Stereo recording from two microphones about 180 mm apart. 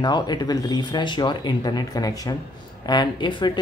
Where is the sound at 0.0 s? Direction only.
25° left (ahead or behind).